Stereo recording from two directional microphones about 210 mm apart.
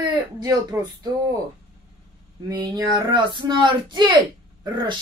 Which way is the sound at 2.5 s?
20° right (ahead or behind).